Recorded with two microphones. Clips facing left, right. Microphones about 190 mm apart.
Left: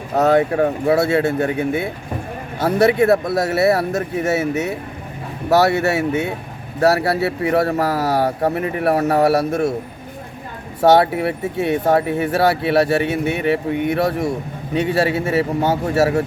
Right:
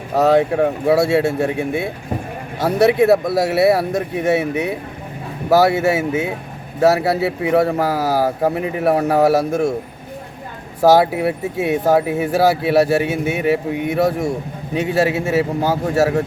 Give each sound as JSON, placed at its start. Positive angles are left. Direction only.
{"t": 0.2, "sound": "speech", "side_deg": 0}
{"t": 10.8, "sound": "speech", "side_deg": 0}